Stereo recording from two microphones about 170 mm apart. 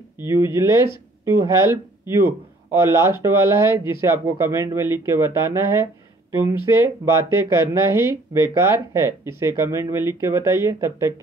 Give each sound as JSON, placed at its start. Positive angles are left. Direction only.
{"t": 0.2, "sound": "speech", "side_deg": -15}